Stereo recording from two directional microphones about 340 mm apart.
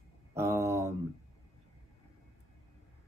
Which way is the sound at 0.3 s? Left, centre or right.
Centre.